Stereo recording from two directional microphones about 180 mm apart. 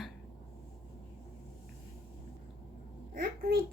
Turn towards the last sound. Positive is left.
turn(degrees=-55)  # may be behind; listen again after turning